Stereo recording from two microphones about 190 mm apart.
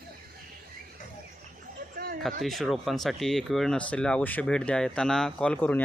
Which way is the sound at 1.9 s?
50° right (ahead or behind).